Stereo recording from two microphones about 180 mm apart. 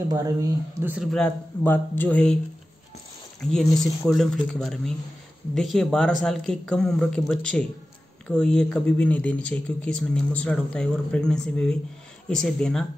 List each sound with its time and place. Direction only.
0.1 s speech: 20° right (ahead or behind)
0.9 s speech: 5° left (ahead or behind)
3.4 s speech: centre (ahead or behind)